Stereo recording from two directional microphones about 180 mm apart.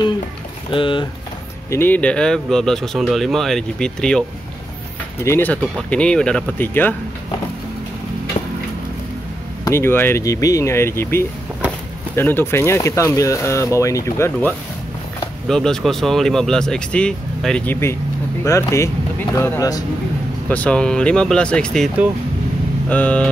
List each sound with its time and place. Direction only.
0.7 s speech: 30° left (ahead or behind)
1.7 s speech: 10° left (ahead or behind)
5.2 s speech: 15° left (ahead or behind)
9.7 s speech: 15° left (ahead or behind)
15.4 s speech: 5° left (ahead or behind)